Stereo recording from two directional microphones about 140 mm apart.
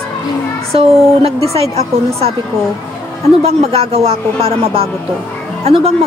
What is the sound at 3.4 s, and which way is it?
Speech, 45° right (ahead or behind).